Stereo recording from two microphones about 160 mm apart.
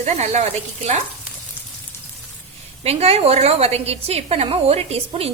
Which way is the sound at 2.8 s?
40° right (ahead or behind).